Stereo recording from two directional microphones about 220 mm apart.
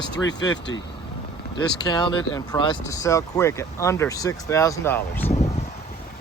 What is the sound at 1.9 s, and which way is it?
Speech, 20° left (ahead or behind).